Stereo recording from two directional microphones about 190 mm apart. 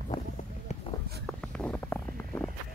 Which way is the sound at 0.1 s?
20° left (ahead or behind).